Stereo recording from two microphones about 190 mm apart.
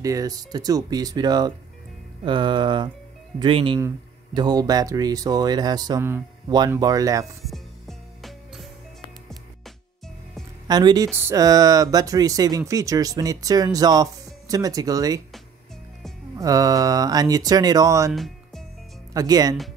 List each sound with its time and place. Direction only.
0.0 s speech: 20° right (ahead or behind)
8.2 s music: centre (ahead or behind)
10.7 s speech: 20° right (ahead or behind)
16.3 s speech: 20° right (ahead or behind)
18.1 s music: centre (ahead or behind)
19.1 s speech: 20° right (ahead or behind)